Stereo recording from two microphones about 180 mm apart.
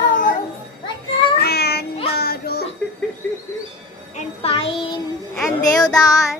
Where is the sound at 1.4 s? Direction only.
65° left (ahead or behind).